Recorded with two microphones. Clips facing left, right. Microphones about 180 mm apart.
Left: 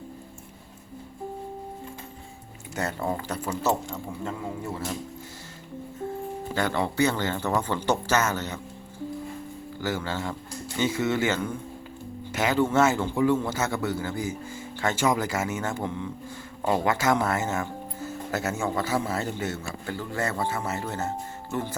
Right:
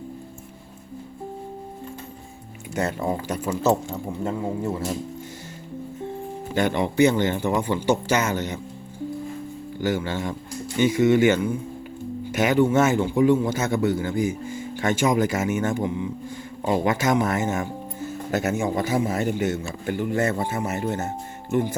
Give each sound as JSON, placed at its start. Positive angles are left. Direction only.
{"t": 2.7, "sound": "speech", "side_deg": -20}
{"t": 6.5, "sound": "speech", "side_deg": -20}
{"t": 9.8, "sound": "a man's voice", "side_deg": -20}